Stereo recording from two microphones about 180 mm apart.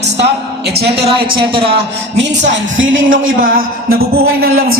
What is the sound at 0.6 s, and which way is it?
Music, 65° right (ahead or behind).